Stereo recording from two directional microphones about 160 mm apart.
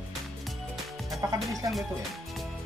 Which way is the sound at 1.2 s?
20° right (ahead or behind).